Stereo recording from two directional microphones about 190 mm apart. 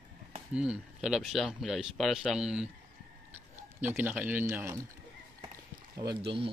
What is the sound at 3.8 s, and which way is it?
Speech, 10° right (ahead or behind).